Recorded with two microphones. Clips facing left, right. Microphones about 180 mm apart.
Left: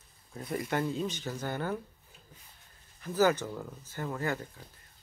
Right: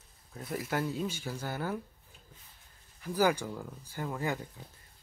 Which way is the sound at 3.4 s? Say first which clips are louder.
Left 1 dB; 5° left (ahead or behind).